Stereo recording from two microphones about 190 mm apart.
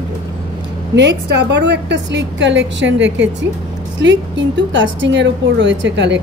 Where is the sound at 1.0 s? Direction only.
65° right (ahead or behind).